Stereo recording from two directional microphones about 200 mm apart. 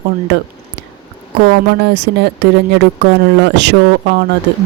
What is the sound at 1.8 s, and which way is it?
Speech, 60° right (ahead or behind).